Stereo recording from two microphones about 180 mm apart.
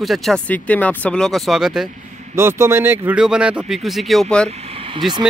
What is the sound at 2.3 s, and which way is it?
Speech, 15° right (ahead or behind).